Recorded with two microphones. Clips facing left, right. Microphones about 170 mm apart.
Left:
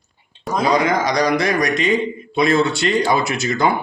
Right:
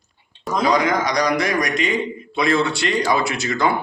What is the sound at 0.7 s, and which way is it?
Speech, 25° left (ahead or behind).